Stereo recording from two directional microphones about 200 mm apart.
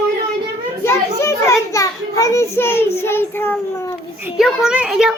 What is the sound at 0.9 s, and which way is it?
Children playing, 15° left (ahead or behind).